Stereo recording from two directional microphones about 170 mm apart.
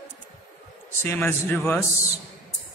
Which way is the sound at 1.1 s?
10° left (ahead or behind).